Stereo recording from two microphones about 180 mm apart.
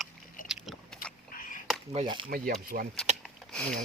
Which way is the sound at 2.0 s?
25° right (ahead or behind).